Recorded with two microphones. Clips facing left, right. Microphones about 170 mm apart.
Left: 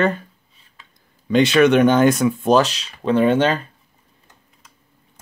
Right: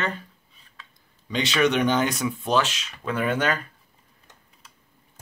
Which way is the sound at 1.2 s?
55° left (ahead or behind).